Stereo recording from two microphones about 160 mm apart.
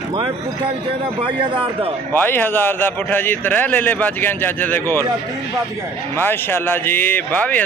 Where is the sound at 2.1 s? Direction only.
10° left (ahead or behind).